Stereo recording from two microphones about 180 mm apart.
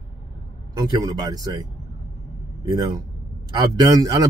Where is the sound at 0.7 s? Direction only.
20° right (ahead or behind).